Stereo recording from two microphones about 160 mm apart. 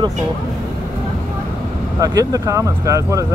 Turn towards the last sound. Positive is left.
turn(degrees=-20)  # may be behind; listen again after turning